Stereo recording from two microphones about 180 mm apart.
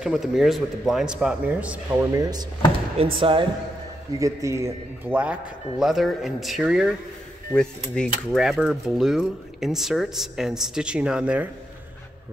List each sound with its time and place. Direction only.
0.0 s cutlery: 5° right (ahead or behind)
3.2 s speech: 30° right (ahead or behind)
4.2 s cutlery: 15° right (ahead or behind)